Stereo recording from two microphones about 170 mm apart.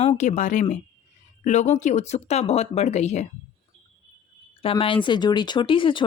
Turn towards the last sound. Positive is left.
turn(degrees=30)  # may be behind; listen again after turning